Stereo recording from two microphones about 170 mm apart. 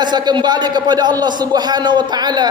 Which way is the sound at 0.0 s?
25° right (ahead or behind).